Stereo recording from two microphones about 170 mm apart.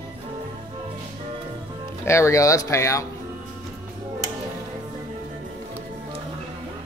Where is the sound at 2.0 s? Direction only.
15° left (ahead or behind).